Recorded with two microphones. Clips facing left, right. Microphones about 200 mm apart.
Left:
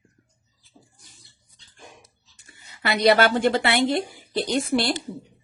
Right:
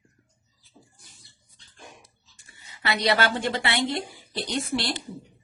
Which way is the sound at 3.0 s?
50° left (ahead or behind).